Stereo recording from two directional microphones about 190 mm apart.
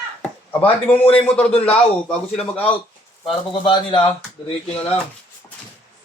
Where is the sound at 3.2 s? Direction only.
25° left (ahead or behind).